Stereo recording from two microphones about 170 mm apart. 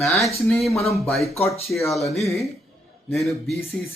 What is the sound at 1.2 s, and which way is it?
Speech, 35° left (ahead or behind).